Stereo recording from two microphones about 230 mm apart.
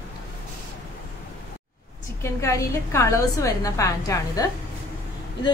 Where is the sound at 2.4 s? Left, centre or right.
Centre.